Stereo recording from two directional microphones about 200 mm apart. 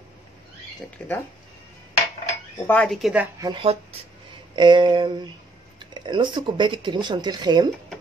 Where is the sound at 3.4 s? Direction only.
25° right (ahead or behind).